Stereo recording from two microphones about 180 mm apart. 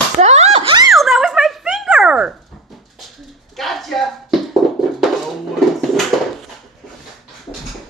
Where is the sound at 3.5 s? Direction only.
Centre (ahead or behind).